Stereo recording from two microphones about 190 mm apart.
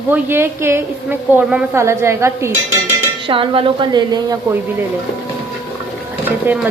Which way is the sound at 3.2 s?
25° right (ahead or behind).